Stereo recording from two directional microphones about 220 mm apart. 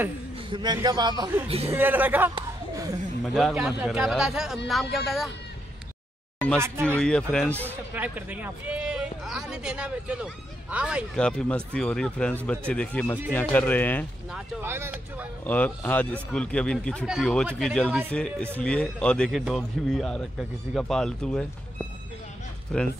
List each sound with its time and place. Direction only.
0.5 s a man's voice: 20° right (ahead or behind)
3.3 s speech: centre (ahead or behind)
7.0 s speech: 5° left (ahead or behind)
7.6 s speech: 10° right (ahead or behind); by 14.0 s 10° left (ahead or behind)
14.3 s speech: 5° right (ahead or behind)
15.4 s speech: 5° left (ahead or behind)
22.7 s speech: 5° left (ahead or behind)